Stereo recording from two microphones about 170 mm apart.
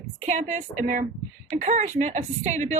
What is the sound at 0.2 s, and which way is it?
A woman's voice, 45° right (ahead or behind).